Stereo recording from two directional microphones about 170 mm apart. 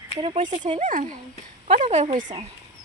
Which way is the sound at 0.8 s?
50° right (ahead or behind).